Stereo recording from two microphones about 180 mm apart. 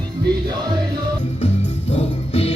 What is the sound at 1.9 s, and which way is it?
Music, 35° left (ahead or behind).